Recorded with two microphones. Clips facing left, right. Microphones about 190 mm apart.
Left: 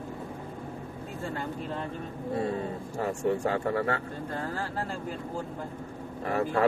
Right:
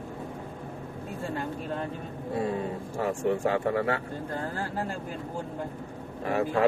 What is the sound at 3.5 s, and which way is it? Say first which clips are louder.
Speech: right 2 dB; 15° right (ahead or behind).